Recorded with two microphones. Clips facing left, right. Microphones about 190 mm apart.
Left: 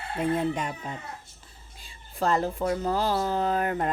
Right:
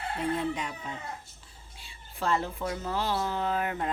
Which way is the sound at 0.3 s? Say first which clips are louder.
Left 4 dB; 45° left (ahead or behind).